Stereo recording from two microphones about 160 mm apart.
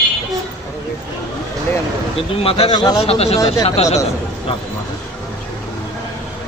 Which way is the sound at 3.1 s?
40° left (ahead or behind).